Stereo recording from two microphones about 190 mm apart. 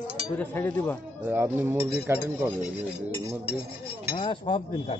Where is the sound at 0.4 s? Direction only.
10° left (ahead or behind).